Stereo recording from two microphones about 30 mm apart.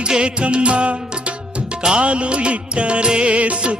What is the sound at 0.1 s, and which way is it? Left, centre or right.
Music, right.